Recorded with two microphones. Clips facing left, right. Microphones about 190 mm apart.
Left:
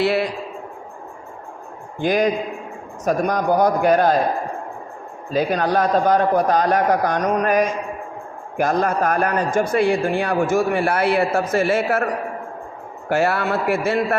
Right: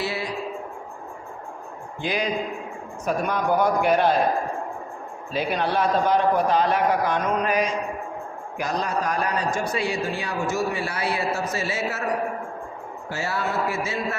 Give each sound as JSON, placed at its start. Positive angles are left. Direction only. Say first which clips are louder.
{"t": 0.0, "sound": "a sound", "louder": "left 9 dB", "side_deg": 65}
{"t": 2.0, "sound": "a man's voice", "louder": "left 7 dB", "side_deg": 45}
{"t": 5.3, "sound": "a man's voice", "louder": "left 5 dB", "side_deg": 45}
{"t": 13.1, "sound": "a man's voice", "louder": "left 9 dB", "side_deg": 60}